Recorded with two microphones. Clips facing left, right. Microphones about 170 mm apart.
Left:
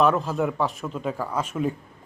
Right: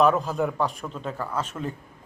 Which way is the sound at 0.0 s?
Centre (ahead or behind).